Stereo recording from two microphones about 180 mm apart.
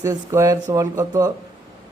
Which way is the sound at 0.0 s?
15° right (ahead or behind).